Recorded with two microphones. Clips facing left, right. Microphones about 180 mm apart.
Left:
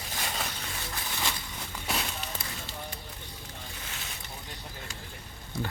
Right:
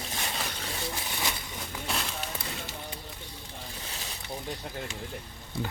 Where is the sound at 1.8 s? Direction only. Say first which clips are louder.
Left 1 dB; 5° left (ahead or behind).